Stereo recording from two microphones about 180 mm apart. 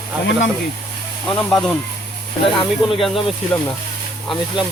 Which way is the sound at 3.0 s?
Centre (ahead or behind).